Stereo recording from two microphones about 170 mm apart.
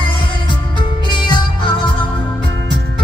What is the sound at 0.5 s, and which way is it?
Music, 25° left (ahead or behind).